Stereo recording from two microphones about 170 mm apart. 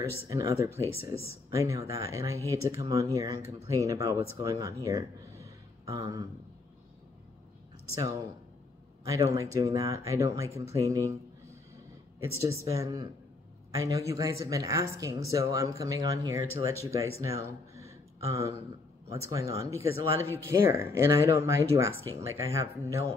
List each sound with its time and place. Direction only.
0.3 s speech: 20° right (ahead or behind)
4.8 s a sound: 20° right (ahead or behind)
9.0 s speech: 20° right (ahead or behind)
12.2 s speech: 20° right (ahead or behind)
17.2 s a sound: 20° right (ahead or behind)
19.5 s speech: 15° right (ahead or behind)